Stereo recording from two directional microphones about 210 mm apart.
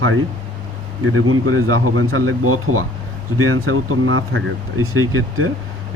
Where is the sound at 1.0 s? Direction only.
80° right.